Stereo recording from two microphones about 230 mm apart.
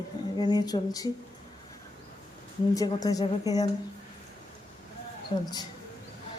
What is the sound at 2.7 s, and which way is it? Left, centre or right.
Speech, centre.